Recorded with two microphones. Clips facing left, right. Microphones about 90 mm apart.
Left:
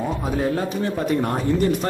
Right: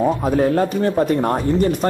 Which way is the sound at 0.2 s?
45° right (ahead or behind).